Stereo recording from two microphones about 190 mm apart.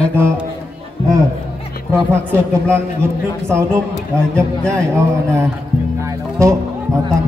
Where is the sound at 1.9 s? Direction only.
15° right (ahead or behind).